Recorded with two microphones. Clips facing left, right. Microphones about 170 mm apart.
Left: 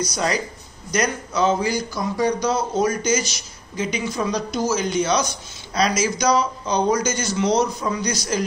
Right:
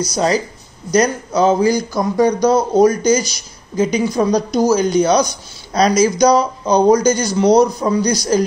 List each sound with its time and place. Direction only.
0.1 s a man's voice: 35° right (ahead or behind)